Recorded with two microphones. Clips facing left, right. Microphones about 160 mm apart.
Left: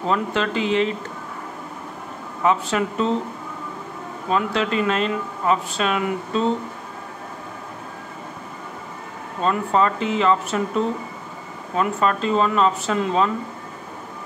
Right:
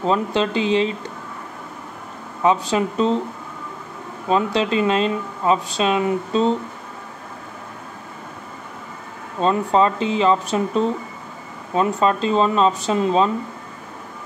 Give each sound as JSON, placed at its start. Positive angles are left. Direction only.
{"t": 0.0, "sound": "speech", "side_deg": -20}
{"t": 2.4, "sound": "speech", "side_deg": -20}
{"t": 4.3, "sound": "speech", "side_deg": -25}
{"t": 9.4, "sound": "speech", "side_deg": -25}
{"t": 11.7, "sound": "speech", "side_deg": -25}